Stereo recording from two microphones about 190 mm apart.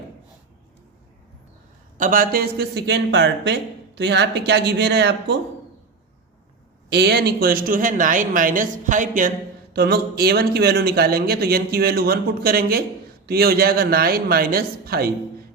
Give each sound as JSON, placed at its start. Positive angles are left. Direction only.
{"t": 2.0, "sound": "speech", "side_deg": -45}
{"t": 6.9, "sound": "speech", "side_deg": -60}
{"t": 9.7, "sound": "speech", "side_deg": -55}